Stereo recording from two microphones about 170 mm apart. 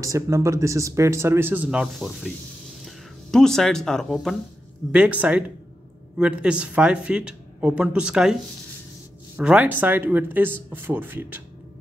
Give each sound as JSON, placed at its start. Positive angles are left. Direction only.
{"t": 0.0, "sound": "speech", "side_deg": -20}
{"t": 9.4, "sound": "speech", "side_deg": -10}